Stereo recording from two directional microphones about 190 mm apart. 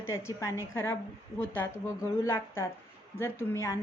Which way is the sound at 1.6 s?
10° left (ahead or behind).